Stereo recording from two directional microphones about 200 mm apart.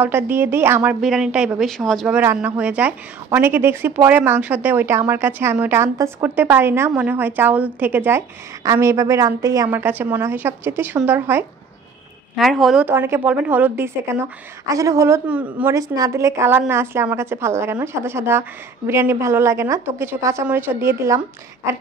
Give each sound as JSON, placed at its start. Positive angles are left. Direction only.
{"t": 0.0, "sound": "a woman's voice", "side_deg": -10}
{"t": 12.4, "sound": "a woman's voice", "side_deg": 0}